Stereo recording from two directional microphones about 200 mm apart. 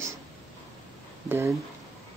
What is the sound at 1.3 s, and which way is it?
Speech, 15° right (ahead or behind).